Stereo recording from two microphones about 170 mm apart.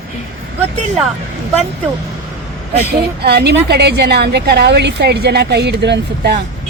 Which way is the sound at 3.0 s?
70° right (ahead or behind).